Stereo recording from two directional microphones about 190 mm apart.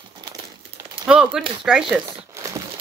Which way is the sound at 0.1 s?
25° right (ahead or behind).